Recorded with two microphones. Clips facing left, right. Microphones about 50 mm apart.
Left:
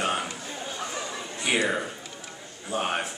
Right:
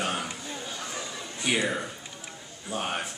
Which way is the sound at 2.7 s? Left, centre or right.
Centre.